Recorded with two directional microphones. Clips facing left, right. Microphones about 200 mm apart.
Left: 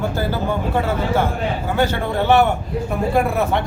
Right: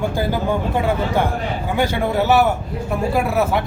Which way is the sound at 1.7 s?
10° right (ahead or behind).